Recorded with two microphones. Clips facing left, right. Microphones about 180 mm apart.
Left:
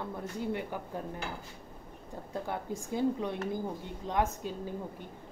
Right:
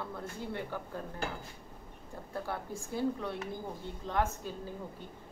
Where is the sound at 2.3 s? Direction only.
20° left (ahead or behind).